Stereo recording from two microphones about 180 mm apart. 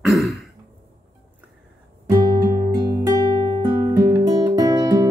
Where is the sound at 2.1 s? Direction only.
20° right (ahead or behind).